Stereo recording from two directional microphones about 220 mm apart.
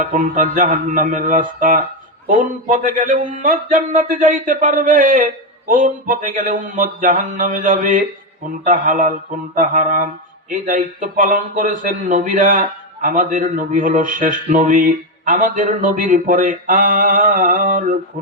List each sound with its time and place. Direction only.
0.0 s a man's voice: 35° right (ahead or behind)